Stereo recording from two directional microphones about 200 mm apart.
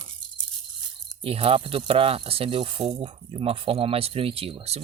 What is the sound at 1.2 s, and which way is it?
Speech, 30° right (ahead or behind).